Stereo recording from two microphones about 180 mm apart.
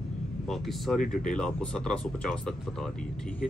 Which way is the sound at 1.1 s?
45° left (ahead or behind).